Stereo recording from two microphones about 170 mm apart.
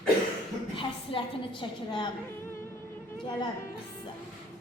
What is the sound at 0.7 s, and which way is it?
A woman's voice, 30° left (ahead or behind).